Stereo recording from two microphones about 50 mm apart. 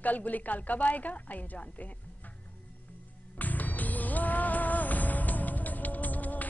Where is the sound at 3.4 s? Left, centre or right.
Left.